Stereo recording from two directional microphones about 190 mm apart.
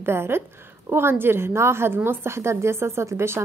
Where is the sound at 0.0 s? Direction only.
10° right (ahead or behind).